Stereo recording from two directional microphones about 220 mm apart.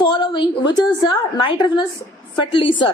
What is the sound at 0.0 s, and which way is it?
A woman's voice, 20° left (ahead or behind).